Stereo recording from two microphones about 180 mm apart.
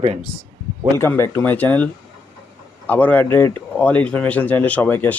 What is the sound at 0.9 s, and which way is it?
Speech, 15° left (ahead or behind).